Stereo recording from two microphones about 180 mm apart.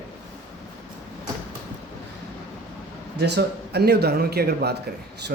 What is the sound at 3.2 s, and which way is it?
Speech, 65° right (ahead or behind).